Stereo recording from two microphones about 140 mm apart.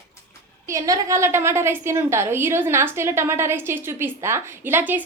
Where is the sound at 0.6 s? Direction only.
25° right (ahead or behind).